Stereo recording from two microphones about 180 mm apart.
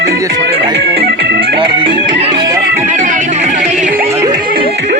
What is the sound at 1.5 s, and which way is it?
Music, 30° right (ahead or behind).